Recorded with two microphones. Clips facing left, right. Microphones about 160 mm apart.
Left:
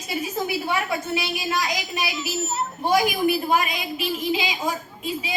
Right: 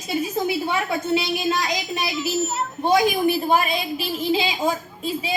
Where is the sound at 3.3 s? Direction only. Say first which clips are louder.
Right 2 dB; 30° right (ahead or behind).